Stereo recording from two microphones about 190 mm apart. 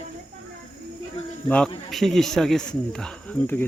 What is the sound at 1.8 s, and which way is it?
Speech, centre (ahead or behind).